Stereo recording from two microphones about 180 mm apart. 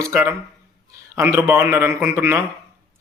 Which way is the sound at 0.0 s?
15° right (ahead or behind).